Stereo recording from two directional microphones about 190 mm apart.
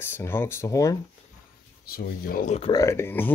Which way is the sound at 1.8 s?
50° left (ahead or behind).